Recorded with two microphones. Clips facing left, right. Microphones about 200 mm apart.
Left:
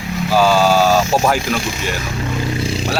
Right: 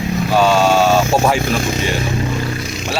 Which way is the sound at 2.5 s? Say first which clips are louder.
Left 4 dB; 30° left (ahead or behind).